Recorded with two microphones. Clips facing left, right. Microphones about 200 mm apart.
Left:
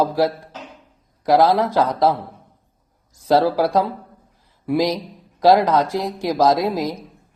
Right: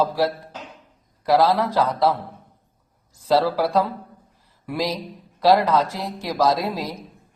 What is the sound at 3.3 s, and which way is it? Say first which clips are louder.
A woman's voice: left 3 dB; 15° left (ahead or behind).